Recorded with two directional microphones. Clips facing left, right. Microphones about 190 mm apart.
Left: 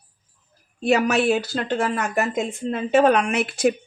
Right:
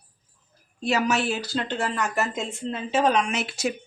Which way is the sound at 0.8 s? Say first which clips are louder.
Left 5 dB; 60° left (ahead or behind).